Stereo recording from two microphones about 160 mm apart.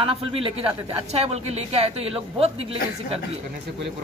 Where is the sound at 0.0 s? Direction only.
35° right (ahead or behind).